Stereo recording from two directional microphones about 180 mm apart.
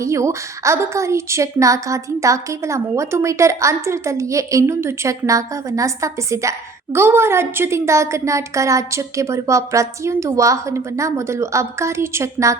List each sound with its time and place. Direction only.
0.0 s a woman's voice: 15° right (ahead or behind)